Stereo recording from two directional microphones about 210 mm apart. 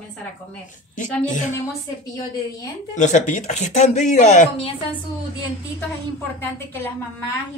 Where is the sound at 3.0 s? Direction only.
35° left (ahead or behind).